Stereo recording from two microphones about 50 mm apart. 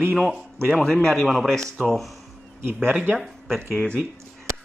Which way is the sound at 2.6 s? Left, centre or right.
Right.